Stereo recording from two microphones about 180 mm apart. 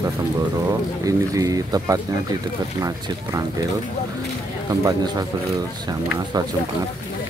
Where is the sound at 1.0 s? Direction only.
20° right (ahead or behind).